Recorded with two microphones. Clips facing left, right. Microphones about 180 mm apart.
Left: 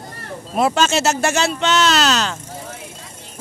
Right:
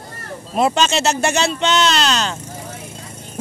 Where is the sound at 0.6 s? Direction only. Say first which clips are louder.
Even; 5° left (ahead or behind).